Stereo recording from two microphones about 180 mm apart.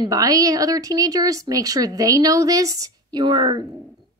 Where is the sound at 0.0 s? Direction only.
20° right (ahead or behind).